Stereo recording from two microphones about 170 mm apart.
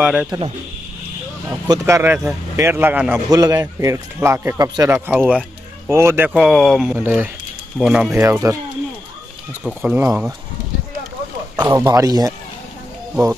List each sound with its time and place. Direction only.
0.0 s speech: 5° right (ahead or behind)
1.5 s speech: 15° right (ahead or behind)
3.3 s speech: 20° right (ahead or behind)
9.8 s speech: 10° right (ahead or behind)
11.5 s speech: 25° right (ahead or behind)